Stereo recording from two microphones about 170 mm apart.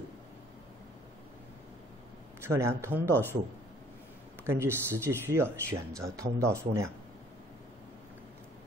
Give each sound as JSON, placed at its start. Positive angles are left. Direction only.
{"t": 2.4, "sound": "speech", "side_deg": -15}
{"t": 4.5, "sound": "speech", "side_deg": -15}